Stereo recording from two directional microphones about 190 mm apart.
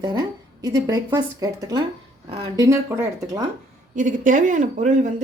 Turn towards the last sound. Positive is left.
turn(degrees=-40)  # may be behind; listen again after turning